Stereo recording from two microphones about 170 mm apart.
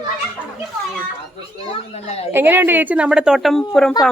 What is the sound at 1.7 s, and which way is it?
Speech, 40° left (ahead or behind).